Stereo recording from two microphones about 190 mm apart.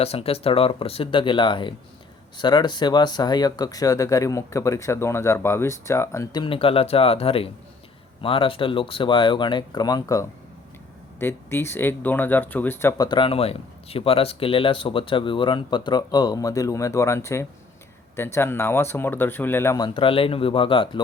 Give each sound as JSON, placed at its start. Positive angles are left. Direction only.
{"t": 0.0, "sound": "speech", "side_deg": 30}